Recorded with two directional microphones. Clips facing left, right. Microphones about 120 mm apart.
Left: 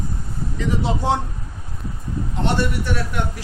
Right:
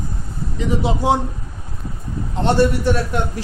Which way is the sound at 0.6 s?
10° right (ahead or behind).